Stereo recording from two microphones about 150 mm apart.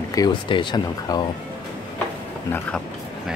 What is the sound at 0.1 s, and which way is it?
Speech, 30° left (ahead or behind).